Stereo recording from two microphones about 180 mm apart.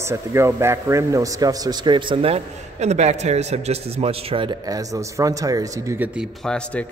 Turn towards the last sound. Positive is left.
turn(degrees=5)  # may be behind; listen again after turning